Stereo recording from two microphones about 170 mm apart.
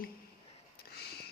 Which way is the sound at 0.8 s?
70° left (ahead or behind).